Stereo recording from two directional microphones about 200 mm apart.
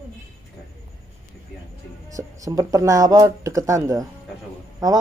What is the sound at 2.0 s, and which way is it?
Speech, 15° right (ahead or behind).